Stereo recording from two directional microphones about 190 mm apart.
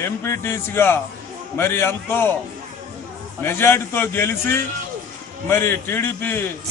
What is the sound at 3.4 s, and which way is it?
A man's voice, 10° left (ahead or behind).